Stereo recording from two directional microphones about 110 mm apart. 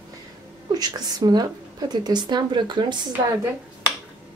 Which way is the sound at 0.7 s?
35° right (ahead or behind).